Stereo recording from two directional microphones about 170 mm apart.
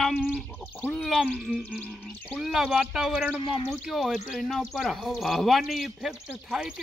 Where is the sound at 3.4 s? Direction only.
30° left (ahead or behind).